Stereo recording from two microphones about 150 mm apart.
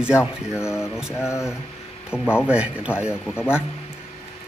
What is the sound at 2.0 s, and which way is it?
Speech, 5° right (ahead or behind).